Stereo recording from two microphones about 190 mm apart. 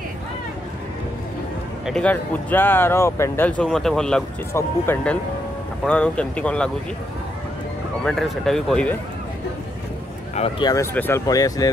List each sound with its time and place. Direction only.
1.9 s speech: 5° left (ahead or behind)
8.0 s speech: centre (ahead or behind)
10.3 s speech: 30° left (ahead or behind)
10.7 s speech: 15° left (ahead or behind)